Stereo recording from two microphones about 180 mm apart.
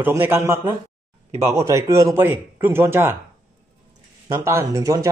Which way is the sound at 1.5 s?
15° right (ahead or behind).